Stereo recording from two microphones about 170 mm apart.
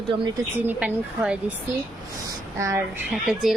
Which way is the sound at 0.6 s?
5° right (ahead or behind).